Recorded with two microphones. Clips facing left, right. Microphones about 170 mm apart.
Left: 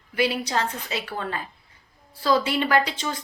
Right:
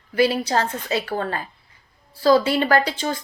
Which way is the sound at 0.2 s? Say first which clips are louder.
Right 5 dB; 40° right (ahead or behind).